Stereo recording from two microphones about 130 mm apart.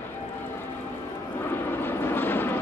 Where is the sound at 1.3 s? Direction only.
15° left (ahead or behind).